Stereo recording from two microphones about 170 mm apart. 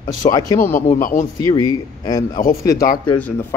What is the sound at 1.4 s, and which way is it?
Speech, 20° left (ahead or behind).